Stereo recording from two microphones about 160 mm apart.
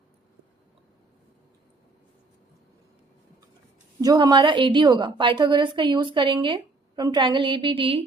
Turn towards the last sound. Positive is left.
turn(degrees=-35)  # may be behind; listen again after turning